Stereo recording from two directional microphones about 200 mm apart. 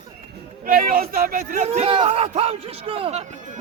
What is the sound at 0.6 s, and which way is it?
A man's voice, 45° right (ahead or behind).